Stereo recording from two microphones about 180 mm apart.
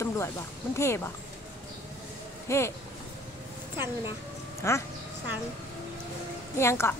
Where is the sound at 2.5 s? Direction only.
15° left (ahead or behind).